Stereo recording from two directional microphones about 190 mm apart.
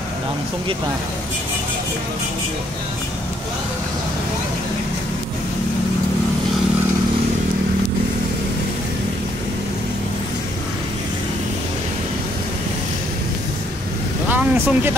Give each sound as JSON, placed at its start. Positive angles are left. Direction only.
{"t": 14.3, "sound": "vehicle", "side_deg": -10}